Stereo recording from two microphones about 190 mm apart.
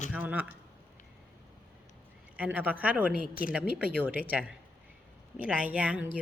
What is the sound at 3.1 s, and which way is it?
Speech, 50° left (ahead or behind).